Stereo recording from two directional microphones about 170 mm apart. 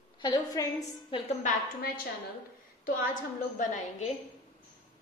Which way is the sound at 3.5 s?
45° left (ahead or behind).